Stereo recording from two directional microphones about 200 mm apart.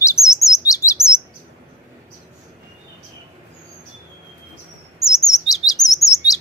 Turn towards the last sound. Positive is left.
turn(degrees=15)  # may be behind; listen again after turning